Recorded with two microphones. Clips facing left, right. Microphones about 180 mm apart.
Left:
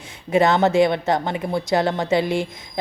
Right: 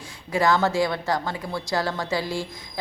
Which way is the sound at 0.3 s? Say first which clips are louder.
Left 5 dB; 20° left (ahead or behind).